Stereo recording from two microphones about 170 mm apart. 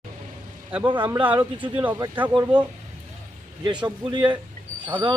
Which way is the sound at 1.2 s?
10° right (ahead or behind).